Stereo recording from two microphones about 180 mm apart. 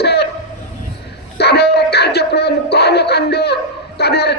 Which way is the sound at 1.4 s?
65° left (ahead or behind).